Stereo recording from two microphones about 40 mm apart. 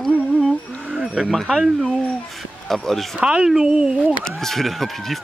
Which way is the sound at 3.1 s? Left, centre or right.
Right.